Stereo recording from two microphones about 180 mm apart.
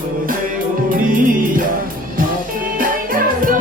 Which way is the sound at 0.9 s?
45° right (ahead or behind).